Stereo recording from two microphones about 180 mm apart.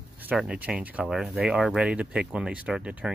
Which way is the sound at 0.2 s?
5° right (ahead or behind).